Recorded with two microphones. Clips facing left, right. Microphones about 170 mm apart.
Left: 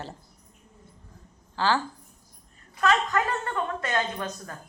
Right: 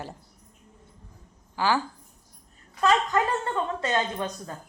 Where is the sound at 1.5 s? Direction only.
15° right (ahead or behind).